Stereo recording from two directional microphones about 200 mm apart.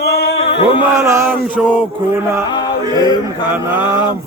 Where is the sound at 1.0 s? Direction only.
15° right (ahead or behind).